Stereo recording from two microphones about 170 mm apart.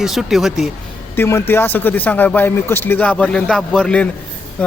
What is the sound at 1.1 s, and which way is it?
A man's voice, 15° left (ahead or behind).